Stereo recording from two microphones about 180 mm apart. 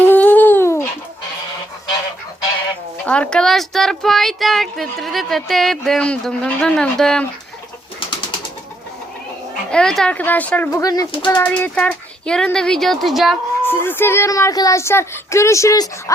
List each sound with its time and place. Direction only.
0.0 s a sound: 10° left (ahead or behind)
3.1 s speech: 5° left (ahead or behind)
9.6 s speech: 5° left (ahead or behind)
10.7 s speech: 20° left (ahead or behind)
11.3 s speech: 10° left (ahead or behind)
13.7 s speech: 10° left (ahead or behind)